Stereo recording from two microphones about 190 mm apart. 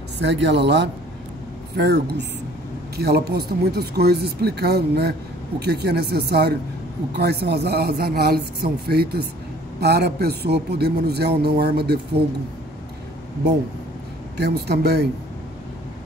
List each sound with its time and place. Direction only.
0.2 s a man's voice: 70° right (ahead or behind)
14.3 s a man's voice: 60° right (ahead or behind)